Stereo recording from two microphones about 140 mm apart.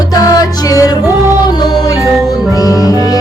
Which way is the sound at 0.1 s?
25° left (ahead or behind).